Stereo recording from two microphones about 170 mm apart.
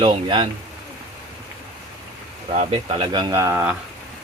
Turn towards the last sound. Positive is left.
turn(degrees=-15)  # may be behind; listen again after turning